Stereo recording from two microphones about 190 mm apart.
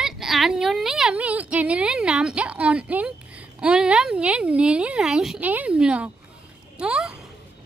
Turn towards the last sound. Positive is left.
turn(degrees=-5)  # may be behind; listen again after turning